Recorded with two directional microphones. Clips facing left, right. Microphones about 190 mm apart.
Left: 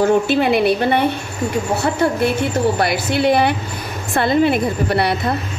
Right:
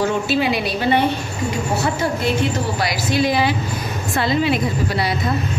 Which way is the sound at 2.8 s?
60° left (ahead or behind).